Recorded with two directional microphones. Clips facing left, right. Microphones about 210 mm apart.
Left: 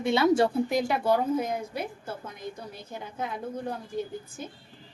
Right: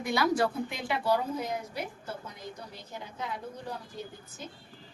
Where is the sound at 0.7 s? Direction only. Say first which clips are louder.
Left 5 dB; 45° left (ahead or behind).